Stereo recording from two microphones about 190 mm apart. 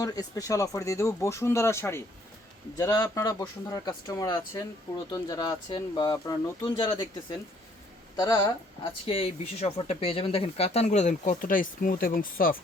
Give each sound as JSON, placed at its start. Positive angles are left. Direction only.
{"t": 0.0, "sound": "speech", "side_deg": 20}